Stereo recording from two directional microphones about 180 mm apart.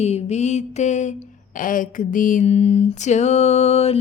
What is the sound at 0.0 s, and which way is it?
Music, 35° left (ahead or behind).